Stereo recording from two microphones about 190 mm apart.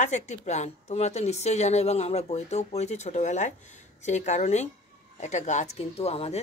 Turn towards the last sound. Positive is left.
turn(degrees=30)  # may be behind; listen again after turning